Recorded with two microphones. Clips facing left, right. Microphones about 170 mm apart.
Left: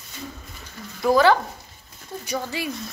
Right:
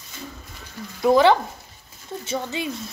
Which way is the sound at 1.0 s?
20° right (ahead or behind).